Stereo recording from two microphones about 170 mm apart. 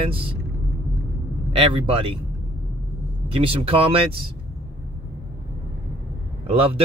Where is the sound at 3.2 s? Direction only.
35° right (ahead or behind).